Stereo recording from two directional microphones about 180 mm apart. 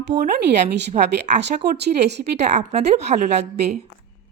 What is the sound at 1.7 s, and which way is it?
Speech, 70° right (ahead or behind).